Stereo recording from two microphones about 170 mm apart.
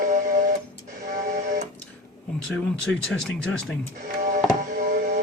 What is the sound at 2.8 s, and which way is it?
Speech, 5° left (ahead or behind).